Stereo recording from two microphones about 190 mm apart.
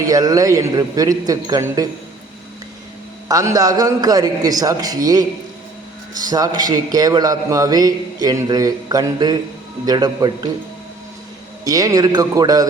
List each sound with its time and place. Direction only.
0.0 s a man's voice: 20° right (ahead or behind)
3.2 s a man's voice: 20° right (ahead or behind)
6.2 s a man's voice: 20° right (ahead or behind)
11.6 s a man's voice: 20° right (ahead or behind)